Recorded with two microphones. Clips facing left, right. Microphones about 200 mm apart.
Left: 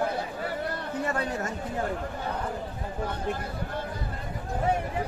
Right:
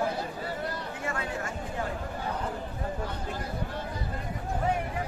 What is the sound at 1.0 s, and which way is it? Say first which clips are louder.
Chatter: left 4 dB; 40° left (ahead or behind).